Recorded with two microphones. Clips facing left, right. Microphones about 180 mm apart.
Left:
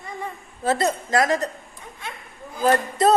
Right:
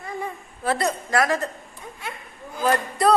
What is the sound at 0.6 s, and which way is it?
Speech, 25° left (ahead or behind).